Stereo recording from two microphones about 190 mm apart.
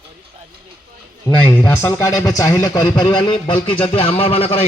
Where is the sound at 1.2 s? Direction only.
10° left (ahead or behind).